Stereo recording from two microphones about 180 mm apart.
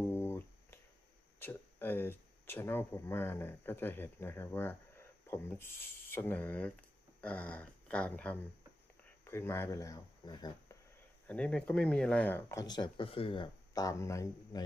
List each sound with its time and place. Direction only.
0.1 s a sound: 15° left (ahead or behind)
1.4 s speech: 10° left (ahead or behind)
11.2 s speech: 5° left (ahead or behind)